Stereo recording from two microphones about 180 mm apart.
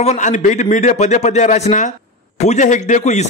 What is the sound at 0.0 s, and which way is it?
Speech, 40° left (ahead or behind).